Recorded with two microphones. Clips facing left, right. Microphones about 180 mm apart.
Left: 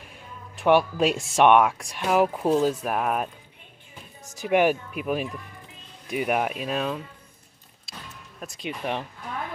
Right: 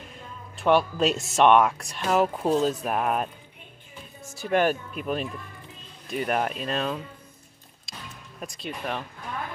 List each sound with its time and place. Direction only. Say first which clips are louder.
0.6 s speech: left 2 dB; 15° left (ahead or behind)
4.4 s speech: left 2 dB; 15° left (ahead or behind)
8.5 s speech: left 3 dB; 15° left (ahead or behind)